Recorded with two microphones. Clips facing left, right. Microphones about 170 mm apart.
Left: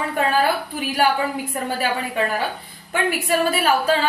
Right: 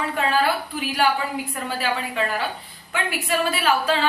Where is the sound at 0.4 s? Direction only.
45° left (ahead or behind).